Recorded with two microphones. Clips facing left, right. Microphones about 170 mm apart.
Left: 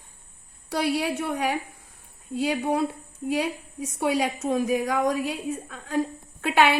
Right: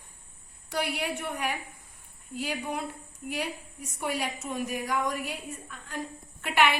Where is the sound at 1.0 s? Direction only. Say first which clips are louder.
Left 6 dB; 85° left.